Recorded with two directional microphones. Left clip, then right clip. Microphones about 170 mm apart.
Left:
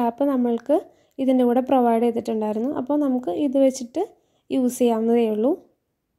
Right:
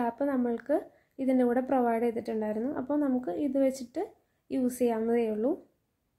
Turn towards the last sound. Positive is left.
turn(degrees=40)  # may be behind; listen again after turning